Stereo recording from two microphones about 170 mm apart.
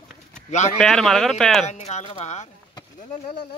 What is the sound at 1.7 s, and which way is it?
Speech, 40° left (ahead or behind).